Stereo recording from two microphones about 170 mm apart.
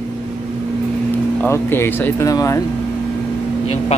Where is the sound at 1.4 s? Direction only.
15° left (ahead or behind).